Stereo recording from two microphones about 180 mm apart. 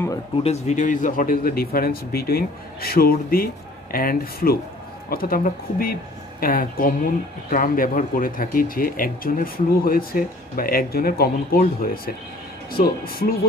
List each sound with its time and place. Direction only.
0.4 s speech: 35° left (ahead or behind); by 13.3 s 55° left (ahead or behind)